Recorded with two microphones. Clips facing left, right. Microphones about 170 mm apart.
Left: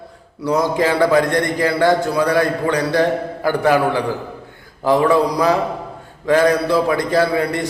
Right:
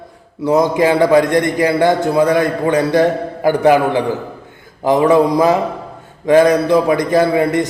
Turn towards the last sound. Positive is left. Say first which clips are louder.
# right 4 dB
turn(degrees=-20)  # may be behind; listen again after turning